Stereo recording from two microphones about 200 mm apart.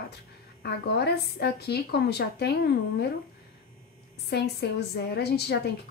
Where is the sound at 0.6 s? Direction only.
55° left (ahead or behind).